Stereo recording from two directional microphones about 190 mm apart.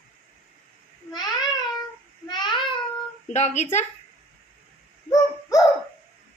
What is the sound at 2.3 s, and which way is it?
Child singing, 25° left (ahead or behind).